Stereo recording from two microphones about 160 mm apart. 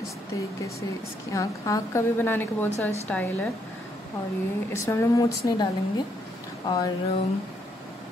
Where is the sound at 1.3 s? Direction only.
20° left (ahead or behind).